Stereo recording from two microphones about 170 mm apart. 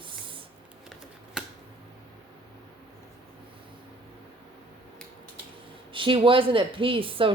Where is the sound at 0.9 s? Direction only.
Centre (ahead or behind).